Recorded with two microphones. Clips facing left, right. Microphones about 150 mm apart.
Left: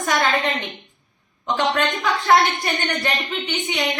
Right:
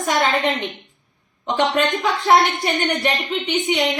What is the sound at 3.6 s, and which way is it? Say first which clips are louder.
Speech: right 5 dB; 25° right (ahead or behind).